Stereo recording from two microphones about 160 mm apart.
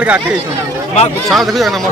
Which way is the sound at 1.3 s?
Centre (ahead or behind).